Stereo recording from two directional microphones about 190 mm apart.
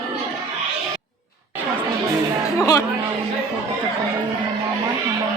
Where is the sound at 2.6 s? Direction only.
15° left (ahead or behind).